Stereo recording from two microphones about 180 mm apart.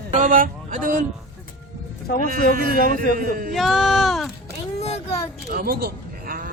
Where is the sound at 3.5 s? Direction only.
Centre (ahead or behind).